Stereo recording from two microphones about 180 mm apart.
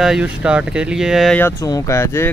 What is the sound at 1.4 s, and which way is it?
Speech, 15° left (ahead or behind).